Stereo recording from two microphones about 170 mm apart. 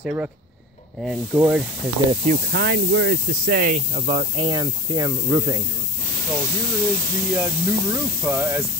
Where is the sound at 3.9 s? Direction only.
30° right (ahead or behind).